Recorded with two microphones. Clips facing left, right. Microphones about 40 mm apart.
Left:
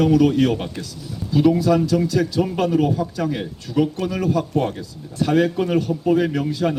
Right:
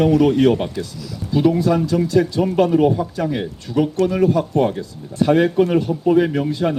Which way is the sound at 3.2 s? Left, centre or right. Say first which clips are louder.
Right 2 dB; centre.